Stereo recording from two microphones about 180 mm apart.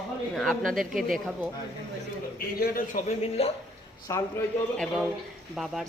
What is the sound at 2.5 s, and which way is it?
Speech, 50° left (ahead or behind).